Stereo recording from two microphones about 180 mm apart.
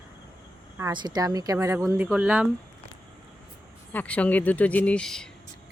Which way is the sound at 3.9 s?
5° left (ahead or behind).